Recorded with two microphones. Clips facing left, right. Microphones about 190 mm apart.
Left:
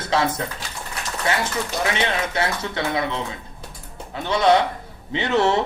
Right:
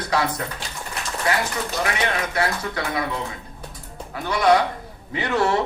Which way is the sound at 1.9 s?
25° left (ahead or behind).